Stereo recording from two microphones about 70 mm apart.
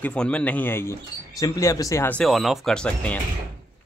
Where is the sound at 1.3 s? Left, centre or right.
Left.